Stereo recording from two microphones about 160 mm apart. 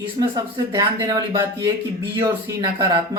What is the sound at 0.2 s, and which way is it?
Speech, 25° right (ahead or behind).